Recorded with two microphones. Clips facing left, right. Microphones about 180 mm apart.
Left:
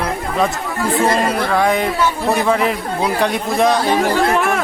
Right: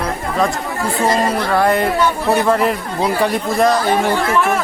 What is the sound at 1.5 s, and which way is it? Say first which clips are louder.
A man's voice: right 3 dB; centre (ahead or behind).